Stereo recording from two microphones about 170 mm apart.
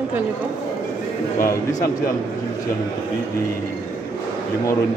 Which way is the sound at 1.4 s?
20° left (ahead or behind).